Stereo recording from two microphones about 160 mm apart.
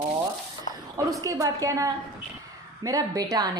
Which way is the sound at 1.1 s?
20° right (ahead or behind).